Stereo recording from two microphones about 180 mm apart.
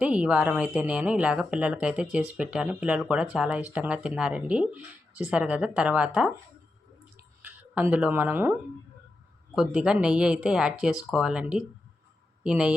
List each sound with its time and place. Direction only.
0.0 s speech: 5° right (ahead or behind)
7.4 s speech: 10° right (ahead or behind)
9.6 s speech: 5° right (ahead or behind)